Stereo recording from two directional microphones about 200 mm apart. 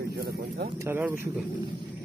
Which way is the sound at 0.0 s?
50° right (ahead or behind).